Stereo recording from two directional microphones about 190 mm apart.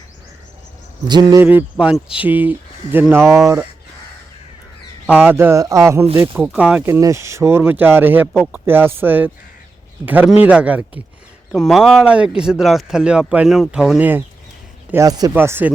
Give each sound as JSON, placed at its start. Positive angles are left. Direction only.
{"t": 1.0, "sound": "speech", "side_deg": -20}
{"t": 5.1, "sound": "speech", "side_deg": -10}